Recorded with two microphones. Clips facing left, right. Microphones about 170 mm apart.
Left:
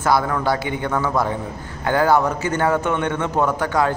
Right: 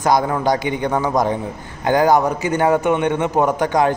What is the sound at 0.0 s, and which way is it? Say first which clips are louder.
A man's voice: right 2 dB; 20° right (ahead or behind).